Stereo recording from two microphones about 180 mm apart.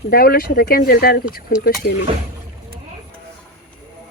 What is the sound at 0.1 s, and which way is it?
Speech, 55° left (ahead or behind).